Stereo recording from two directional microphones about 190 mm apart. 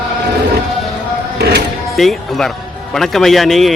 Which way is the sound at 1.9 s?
Centre (ahead or behind).